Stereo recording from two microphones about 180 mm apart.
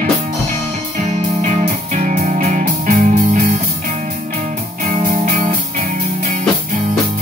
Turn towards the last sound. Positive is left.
turn(degrees=-45)  # may be behind; listen again after turning